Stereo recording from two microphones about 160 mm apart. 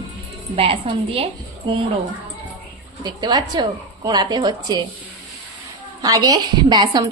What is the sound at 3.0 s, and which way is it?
Speech, 25° right (ahead or behind).